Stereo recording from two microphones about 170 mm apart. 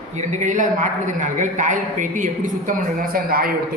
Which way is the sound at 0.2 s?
45° right (ahead or behind).